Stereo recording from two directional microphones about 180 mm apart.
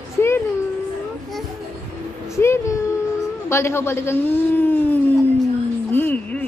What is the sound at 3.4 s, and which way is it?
A man's voice, 15° left (ahead or behind).